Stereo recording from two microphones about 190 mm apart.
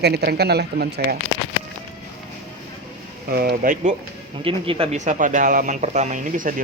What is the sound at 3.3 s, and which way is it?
Speech, 55° right (ahead or behind).